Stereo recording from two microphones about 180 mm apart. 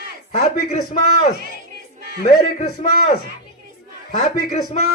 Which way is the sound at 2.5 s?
40° left (ahead or behind).